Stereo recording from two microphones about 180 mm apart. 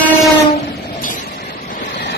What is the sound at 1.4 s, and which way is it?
Waves, 60° left (ahead or behind).